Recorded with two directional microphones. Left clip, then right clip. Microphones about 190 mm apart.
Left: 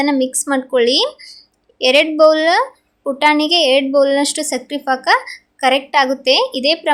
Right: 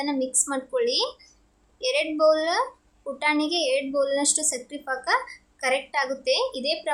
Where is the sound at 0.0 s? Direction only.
25° left (ahead or behind).